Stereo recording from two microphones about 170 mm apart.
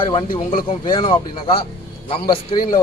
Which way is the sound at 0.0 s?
30° left (ahead or behind).